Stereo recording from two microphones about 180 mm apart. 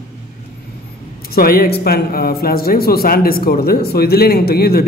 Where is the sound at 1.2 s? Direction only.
55° left (ahead or behind).